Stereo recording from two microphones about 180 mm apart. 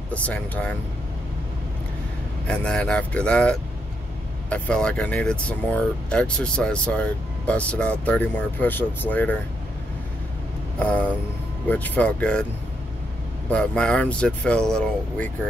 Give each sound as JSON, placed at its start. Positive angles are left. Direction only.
{"t": 0.1, "sound": "speech", "side_deg": 5}
{"t": 2.4, "sound": "speech", "side_deg": 5}
{"t": 10.8, "sound": "speech", "side_deg": 10}
{"t": 13.5, "sound": "speech", "side_deg": 5}